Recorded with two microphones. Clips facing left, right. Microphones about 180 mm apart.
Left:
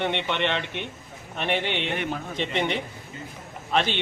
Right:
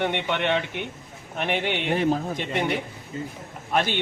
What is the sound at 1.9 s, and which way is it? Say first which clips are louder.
Speech: right 7 dB; 35° right (ahead or behind).